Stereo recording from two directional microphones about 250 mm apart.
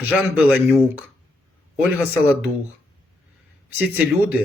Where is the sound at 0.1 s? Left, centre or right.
Centre.